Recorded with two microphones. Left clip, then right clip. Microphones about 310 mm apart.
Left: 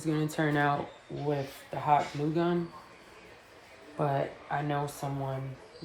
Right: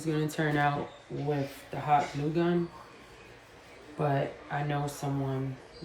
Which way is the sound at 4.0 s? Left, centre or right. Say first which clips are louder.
Even; centre.